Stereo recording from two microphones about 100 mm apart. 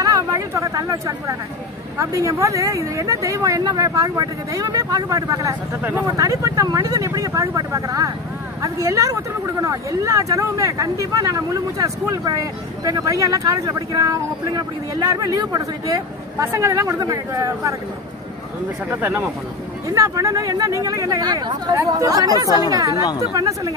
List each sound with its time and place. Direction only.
0.0 s speech: 35° right (ahead or behind)
18.9 s speech: 20° right (ahead or behind)
19.9 s speech: 35° right (ahead or behind)